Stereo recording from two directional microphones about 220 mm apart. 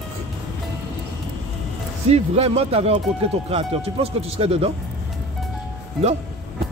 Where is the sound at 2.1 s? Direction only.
30° right (ahead or behind).